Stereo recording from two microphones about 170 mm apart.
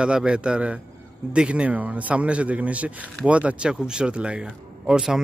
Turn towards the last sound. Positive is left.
turn(degrees=-5)  # may be behind; listen again after turning